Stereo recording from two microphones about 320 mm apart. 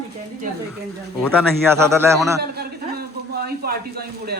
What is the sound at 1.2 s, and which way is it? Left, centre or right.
A man's voice, centre.